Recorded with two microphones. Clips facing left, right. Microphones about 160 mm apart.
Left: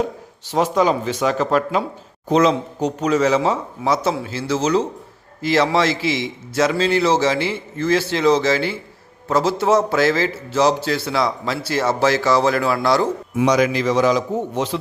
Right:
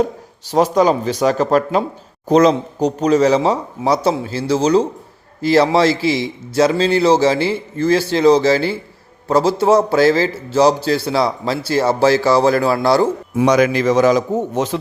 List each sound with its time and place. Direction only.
0.4 s a man's voice: 40° right (ahead or behind)
13.4 s a man's voice: 55° right (ahead or behind)